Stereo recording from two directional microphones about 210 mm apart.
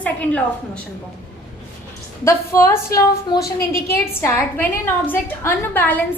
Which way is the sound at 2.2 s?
10° left (ahead or behind).